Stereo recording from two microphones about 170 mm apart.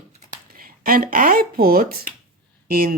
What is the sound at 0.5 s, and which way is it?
Speech, 60° right (ahead or behind).